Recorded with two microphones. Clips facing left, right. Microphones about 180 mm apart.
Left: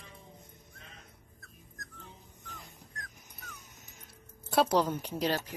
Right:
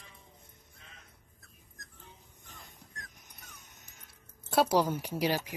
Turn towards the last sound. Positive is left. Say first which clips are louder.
# right 1 dB
turn(degrees=-10)  # may be behind; listen again after turning